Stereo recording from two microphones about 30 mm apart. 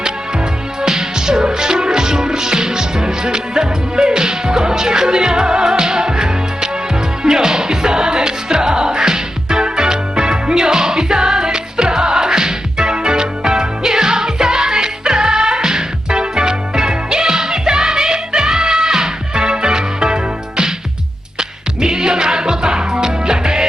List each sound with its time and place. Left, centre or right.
0.8 s music: right